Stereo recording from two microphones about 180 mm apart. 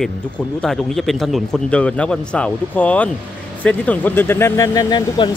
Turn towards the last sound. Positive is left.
turn(degrees=25)  # may be behind; listen again after turning